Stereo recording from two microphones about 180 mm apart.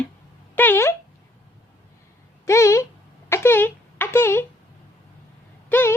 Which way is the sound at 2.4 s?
15° left (ahead or behind).